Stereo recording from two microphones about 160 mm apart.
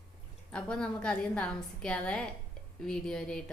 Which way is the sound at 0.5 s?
5° left (ahead or behind).